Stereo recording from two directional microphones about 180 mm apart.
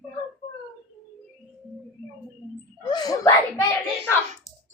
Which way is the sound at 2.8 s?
20° left (ahead or behind).